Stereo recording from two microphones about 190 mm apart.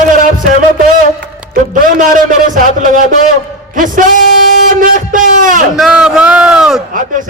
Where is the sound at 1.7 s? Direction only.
45° right (ahead or behind).